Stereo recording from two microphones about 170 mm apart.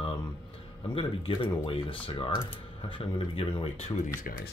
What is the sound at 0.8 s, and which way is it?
Speech, 30° left (ahead or behind).